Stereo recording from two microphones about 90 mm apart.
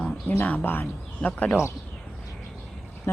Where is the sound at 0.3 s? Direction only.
20° left (ahead or behind).